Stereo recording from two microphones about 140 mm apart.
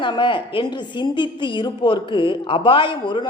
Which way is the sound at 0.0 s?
35° left (ahead or behind).